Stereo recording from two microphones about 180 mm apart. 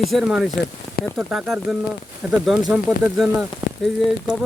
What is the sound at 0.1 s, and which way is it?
Speech, centre (ahead or behind).